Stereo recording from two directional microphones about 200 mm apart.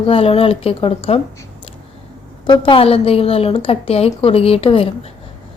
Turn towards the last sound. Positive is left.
turn(degrees=30)  # may be behind; listen again after turning